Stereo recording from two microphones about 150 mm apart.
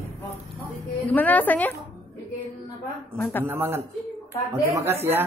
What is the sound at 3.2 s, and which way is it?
Speech, 15° left (ahead or behind).